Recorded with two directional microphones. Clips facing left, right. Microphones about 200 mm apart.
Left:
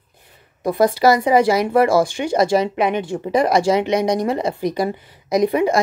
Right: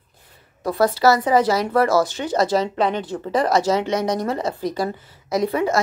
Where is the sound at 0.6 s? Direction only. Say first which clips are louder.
Left 3 dB; 15° left (ahead or behind).